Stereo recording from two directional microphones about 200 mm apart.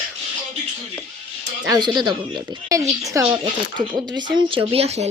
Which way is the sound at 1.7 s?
20° right (ahead or behind).